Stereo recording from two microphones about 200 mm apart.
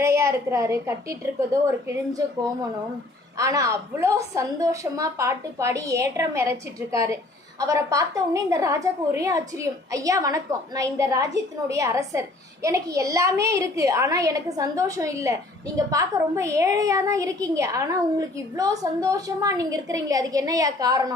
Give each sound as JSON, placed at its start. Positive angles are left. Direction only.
{"t": 0.0, "sound": "a woman's voice", "side_deg": -15}
{"t": 3.3, "sound": "a woman's voice", "side_deg": -15}